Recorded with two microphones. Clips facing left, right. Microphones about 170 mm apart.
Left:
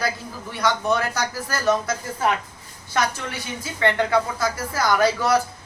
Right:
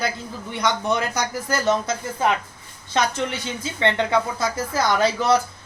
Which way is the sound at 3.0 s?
20° right (ahead or behind).